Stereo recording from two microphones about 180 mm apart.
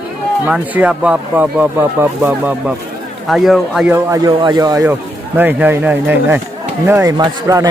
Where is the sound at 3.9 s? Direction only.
20° right (ahead or behind).